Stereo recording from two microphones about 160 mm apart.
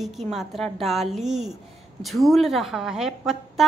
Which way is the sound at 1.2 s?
45° right (ahead or behind).